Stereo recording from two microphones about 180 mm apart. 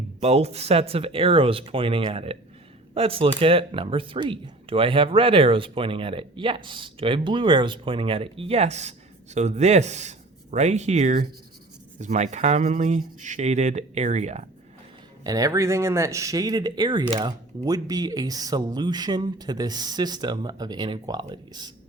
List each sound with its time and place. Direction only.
0.2 s speech: 35° right (ahead or behind)
15.2 s speech: 20° right (ahead or behind)